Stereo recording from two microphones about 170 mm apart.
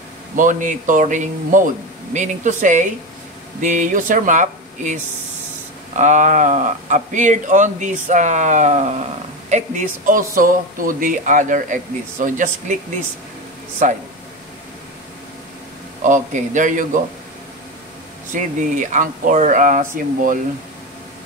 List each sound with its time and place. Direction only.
0.4 s speech: 50° right (ahead or behind)
13.8 s speech: 45° right (ahead or behind)
16.0 s speech: 50° right (ahead or behind)
18.3 s speech: 50° right (ahead or behind)